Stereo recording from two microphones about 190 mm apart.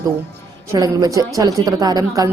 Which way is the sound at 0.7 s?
20° right (ahead or behind).